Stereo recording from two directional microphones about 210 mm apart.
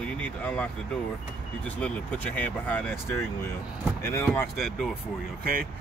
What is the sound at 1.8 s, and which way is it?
Speech, 5° left (ahead or behind).